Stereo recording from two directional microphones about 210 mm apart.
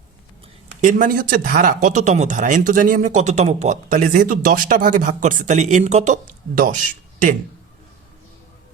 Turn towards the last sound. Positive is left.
turn(degrees=-40)  # may be behind; listen again after turning